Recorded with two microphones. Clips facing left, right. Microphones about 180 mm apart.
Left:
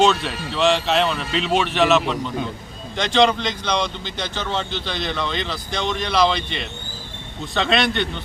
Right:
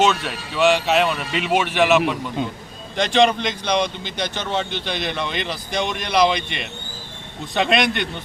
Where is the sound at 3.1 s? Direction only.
15° right (ahead or behind).